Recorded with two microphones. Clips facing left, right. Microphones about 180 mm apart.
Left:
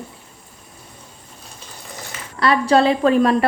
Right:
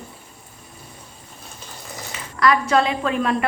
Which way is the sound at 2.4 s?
30° left (ahead or behind).